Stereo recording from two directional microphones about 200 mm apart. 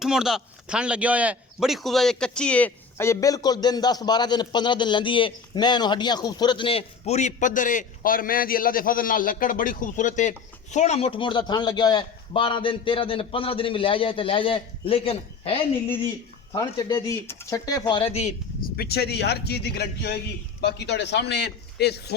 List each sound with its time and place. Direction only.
0.0 s a man's voice: centre (ahead or behind); by 18.3 s 30° left (ahead or behind)
18.6 s a man's voice: 50° left (ahead or behind)